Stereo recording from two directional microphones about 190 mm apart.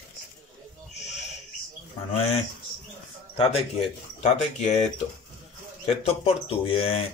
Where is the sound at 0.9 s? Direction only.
35° left (ahead or behind).